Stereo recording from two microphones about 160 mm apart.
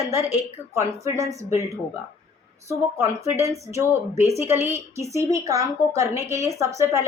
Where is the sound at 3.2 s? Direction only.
40° left (ahead or behind).